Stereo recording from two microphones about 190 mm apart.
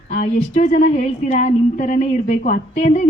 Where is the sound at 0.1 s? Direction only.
35° left (ahead or behind).